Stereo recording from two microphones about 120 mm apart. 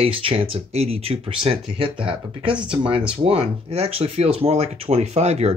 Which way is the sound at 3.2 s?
55° right (ahead or behind).